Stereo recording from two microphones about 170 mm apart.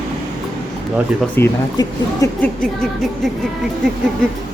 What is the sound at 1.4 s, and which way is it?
Speech, 15° left (ahead or behind).